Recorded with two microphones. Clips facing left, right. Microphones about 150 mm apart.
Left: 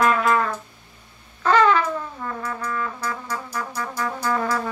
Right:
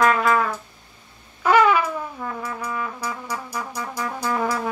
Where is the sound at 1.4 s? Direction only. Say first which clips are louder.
Right 1 dB; 10° right (ahead or behind).